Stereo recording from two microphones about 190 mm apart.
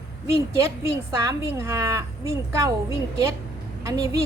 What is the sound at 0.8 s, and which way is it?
A woman's voice, 15° right (ahead or behind).